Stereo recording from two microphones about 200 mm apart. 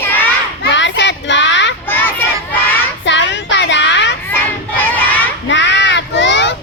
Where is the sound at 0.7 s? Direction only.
60° left (ahead or behind).